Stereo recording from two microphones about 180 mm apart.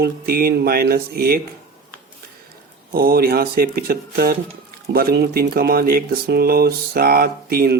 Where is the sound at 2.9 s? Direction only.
55° right (ahead or behind).